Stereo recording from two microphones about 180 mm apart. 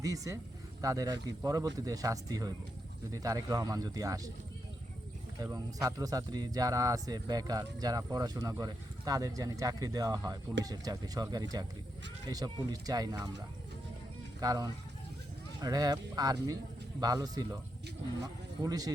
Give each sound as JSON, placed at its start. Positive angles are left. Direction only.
{"t": 0.0, "sound": "speech", "side_deg": -20}
{"t": 5.4, "sound": "speech", "side_deg": -20}
{"t": 14.4, "sound": "speech", "side_deg": -20}